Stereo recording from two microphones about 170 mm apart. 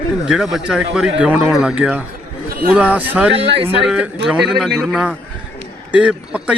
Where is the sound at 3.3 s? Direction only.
35° right (ahead or behind).